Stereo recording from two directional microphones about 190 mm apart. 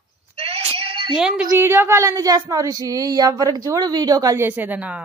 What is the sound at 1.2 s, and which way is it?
A woman's voice, 5° right (ahead or behind).